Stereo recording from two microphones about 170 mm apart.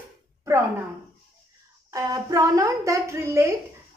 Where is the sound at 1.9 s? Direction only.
20° right (ahead or behind).